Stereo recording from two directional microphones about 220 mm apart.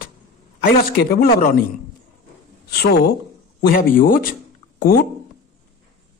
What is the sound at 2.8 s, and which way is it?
Speech, 45° left (ahead or behind).